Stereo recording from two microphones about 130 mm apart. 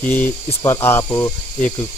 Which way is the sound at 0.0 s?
15° left (ahead or behind).